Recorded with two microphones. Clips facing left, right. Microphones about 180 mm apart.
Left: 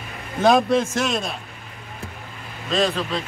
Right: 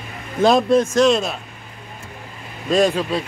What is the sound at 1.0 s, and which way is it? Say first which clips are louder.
Speech: right 8 dB; centre (ahead or behind).